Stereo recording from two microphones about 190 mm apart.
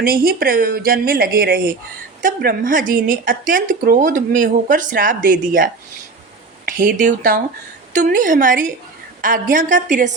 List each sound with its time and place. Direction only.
0.0 s speech: 50° right (ahead or behind)